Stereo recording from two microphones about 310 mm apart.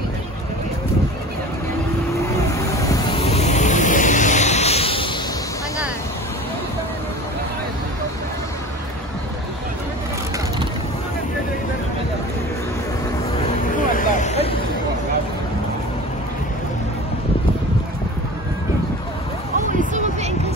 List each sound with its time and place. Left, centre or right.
2.7 s vehicle: centre
13.7 s vehicle: left
19.8 s music: right